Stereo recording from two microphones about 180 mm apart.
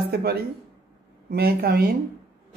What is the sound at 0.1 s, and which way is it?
A woman's voice, 60° right (ahead or behind).